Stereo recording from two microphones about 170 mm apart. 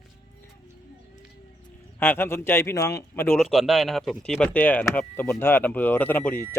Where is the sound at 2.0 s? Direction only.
15° left (ahead or behind).